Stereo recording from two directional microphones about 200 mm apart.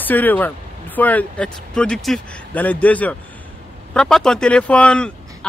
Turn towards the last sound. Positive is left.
turn(degrees=5)  # may be behind; listen again after turning